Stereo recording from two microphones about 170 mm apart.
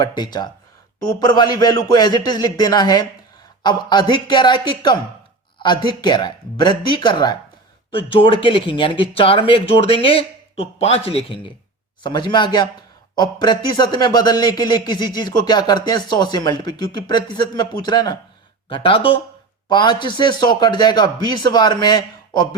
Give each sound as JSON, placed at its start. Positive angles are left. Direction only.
{"t": 0.0, "sound": "speech", "side_deg": 25}